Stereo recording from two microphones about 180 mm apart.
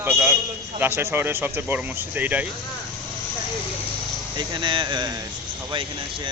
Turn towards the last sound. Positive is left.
turn(degrees=-30)  # may be behind; listen again after turning